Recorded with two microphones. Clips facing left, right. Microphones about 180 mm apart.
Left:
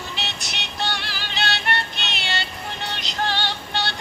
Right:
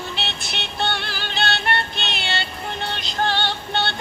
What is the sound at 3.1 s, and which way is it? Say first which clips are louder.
Synthetic singing: right 3 dB; 50° right (ahead or behind).